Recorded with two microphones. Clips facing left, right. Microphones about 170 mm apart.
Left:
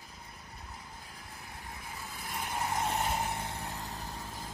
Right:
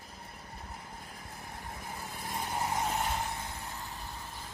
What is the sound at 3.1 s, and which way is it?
Vehicle, 25° left (ahead or behind).